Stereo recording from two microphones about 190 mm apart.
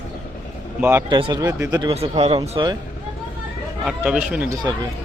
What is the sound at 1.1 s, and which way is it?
Speech, 25° right (ahead or behind).